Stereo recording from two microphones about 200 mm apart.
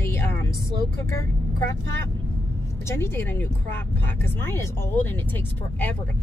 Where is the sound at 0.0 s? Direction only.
10° left (ahead or behind).